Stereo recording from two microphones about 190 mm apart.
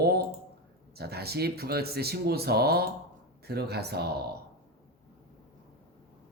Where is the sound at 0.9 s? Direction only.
55° right (ahead or behind).